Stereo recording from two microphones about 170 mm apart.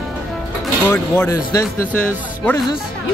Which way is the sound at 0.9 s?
15° left (ahead or behind).